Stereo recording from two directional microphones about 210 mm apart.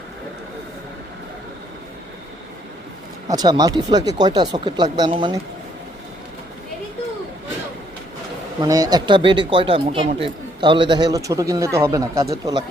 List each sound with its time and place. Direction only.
3.2 s speech: 20° right (ahead or behind)
8.6 s speech: 15° right (ahead or behind)